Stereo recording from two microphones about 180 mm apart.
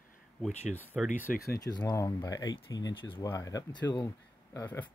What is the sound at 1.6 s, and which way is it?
Speech, 20° left (ahead or behind).